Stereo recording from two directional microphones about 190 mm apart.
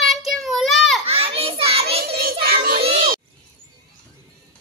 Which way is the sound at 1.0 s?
30° right (ahead or behind).